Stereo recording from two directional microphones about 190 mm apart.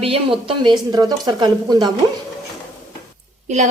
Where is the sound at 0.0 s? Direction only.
30° right (ahead or behind).